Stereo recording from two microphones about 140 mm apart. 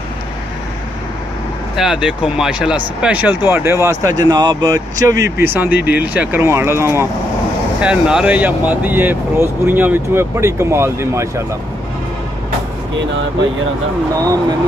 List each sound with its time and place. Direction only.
1.8 s speech: 5° right (ahead or behind)
7.8 s speech: 5° right (ahead or behind)